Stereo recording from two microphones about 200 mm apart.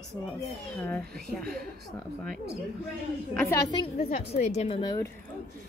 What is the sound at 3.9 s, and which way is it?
Speech, 35° left (ahead or behind).